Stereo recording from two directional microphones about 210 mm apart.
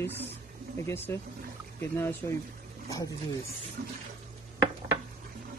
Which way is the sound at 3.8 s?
45° right (ahead or behind).